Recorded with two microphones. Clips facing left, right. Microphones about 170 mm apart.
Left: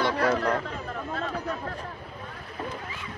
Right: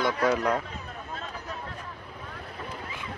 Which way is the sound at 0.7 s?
55° left (ahead or behind).